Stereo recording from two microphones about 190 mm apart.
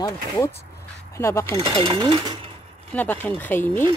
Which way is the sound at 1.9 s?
25° right (ahead or behind).